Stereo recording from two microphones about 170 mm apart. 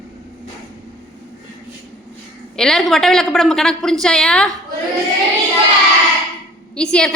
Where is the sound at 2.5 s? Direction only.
5° left (ahead or behind).